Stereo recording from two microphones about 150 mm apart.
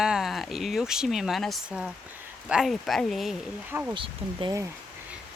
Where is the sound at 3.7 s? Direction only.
15° right (ahead or behind).